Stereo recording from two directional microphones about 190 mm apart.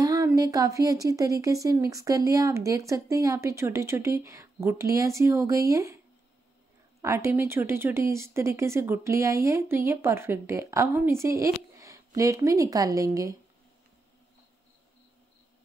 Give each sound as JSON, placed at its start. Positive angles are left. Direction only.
{"t": 0.0, "sound": "speech", "side_deg": -15}
{"t": 7.0, "sound": "speech", "side_deg": -15}